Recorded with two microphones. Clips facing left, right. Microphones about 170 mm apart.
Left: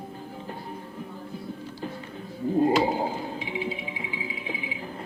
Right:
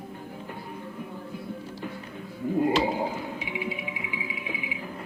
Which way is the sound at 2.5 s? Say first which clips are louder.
Left 2 dB; 30° left (ahead or behind).